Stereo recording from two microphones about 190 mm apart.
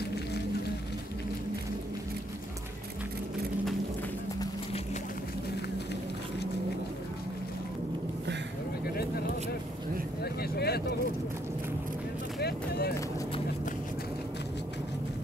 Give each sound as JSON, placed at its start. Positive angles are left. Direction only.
{"t": 8.9, "sound": "vehicle", "side_deg": 55}
{"t": 12.4, "sound": "vehicle", "side_deg": 55}